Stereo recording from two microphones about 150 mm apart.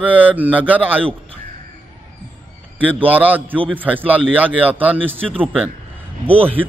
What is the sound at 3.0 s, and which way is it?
A man's voice, 10° right (ahead or behind).